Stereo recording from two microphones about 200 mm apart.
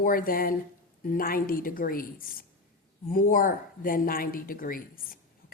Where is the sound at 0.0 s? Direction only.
45° left (ahead or behind).